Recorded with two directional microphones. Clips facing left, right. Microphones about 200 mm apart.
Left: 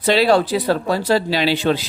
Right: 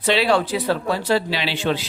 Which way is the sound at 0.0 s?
40° left (ahead or behind).